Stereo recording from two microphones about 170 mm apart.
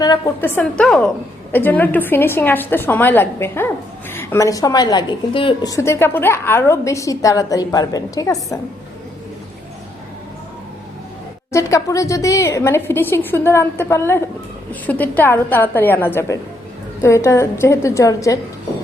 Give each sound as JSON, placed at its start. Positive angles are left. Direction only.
{"t": 0.0, "sound": "a woman's voice", "side_deg": 20}
{"t": 11.5, "sound": "a woman's voice", "side_deg": 20}